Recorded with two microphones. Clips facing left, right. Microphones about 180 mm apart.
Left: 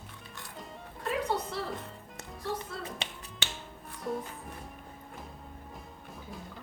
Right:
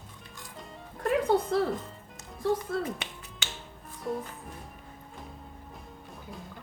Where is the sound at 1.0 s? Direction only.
50° right (ahead or behind).